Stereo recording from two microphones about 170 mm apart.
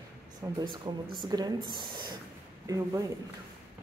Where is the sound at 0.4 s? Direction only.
25° right (ahead or behind).